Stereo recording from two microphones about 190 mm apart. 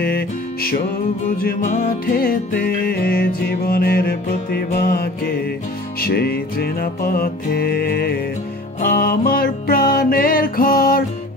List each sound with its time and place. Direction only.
0.0 s music: 55° left (ahead or behind)